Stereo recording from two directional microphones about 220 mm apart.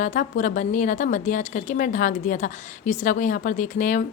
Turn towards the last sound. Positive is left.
turn(degrees=35)  # may be behind; listen again after turning